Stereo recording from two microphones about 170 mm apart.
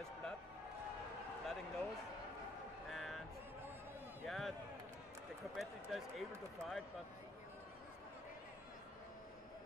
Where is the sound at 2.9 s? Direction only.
Centre (ahead or behind).